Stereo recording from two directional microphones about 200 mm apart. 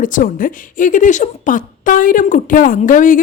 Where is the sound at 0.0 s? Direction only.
40° left (ahead or behind).